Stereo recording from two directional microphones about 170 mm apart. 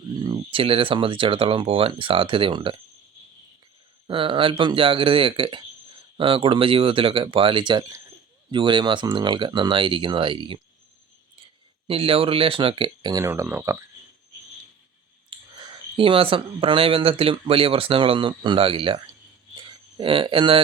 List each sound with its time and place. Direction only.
0.1 s speech: 25° right (ahead or behind)
4.0 s speech: 30° right (ahead or behind)
11.9 s speech: 30° right (ahead or behind); by 13.8 s 15° right (ahead or behind)
15.3 s clicking: 30° right (ahead or behind)
16.0 s speech: 30° right (ahead or behind)
19.6 s a sound: 30° right (ahead or behind)